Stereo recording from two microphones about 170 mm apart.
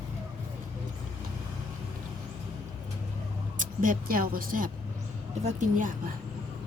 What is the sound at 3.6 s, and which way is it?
A woman's voice, 50° right (ahead or behind).